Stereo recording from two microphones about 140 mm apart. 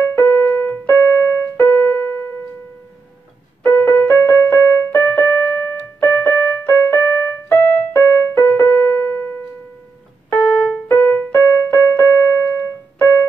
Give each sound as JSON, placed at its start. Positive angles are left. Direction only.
{"t": 0.0, "sound": "keyboard", "side_deg": 15}
{"t": 3.6, "sound": "keyboard", "side_deg": 15}
{"t": 10.3, "sound": "keyboard", "side_deg": 10}